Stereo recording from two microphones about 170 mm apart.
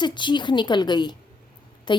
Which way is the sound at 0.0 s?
25° left (ahead or behind).